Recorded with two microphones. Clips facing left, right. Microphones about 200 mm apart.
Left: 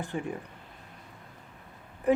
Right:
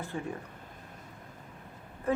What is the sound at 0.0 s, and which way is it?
Speech, 15° left (ahead or behind).